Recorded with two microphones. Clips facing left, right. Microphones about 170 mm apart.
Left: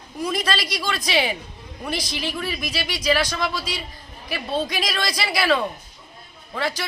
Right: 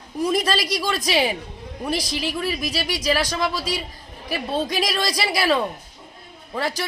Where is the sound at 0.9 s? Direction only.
40° right (ahead or behind).